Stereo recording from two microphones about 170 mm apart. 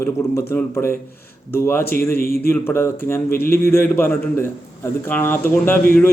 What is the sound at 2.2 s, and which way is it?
Speech, 60° left (ahead or behind).